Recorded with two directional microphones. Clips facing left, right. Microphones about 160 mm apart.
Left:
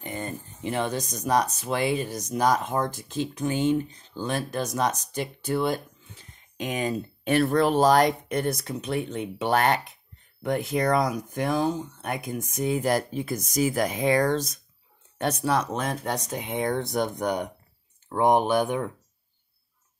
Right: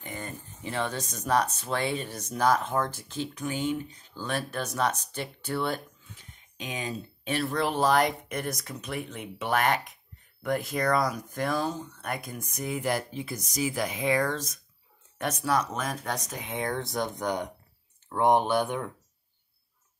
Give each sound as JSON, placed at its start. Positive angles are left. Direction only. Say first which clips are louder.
{"t": 0.1, "sound": "speech", "louder": "left 5 dB", "side_deg": 20}
{"t": 6.6, "sound": "speech", "louder": "left 7 dB", "side_deg": 50}